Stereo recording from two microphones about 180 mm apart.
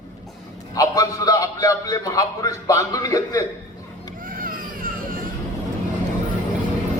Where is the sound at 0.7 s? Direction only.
20° left (ahead or behind).